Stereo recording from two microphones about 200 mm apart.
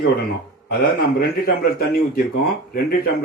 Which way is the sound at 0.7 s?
50° left (ahead or behind).